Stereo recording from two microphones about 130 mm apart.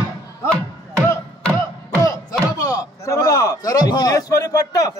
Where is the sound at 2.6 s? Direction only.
25° left (ahead or behind).